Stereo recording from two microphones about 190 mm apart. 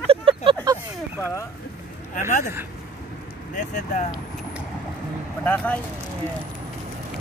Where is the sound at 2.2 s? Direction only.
40° left (ahead or behind).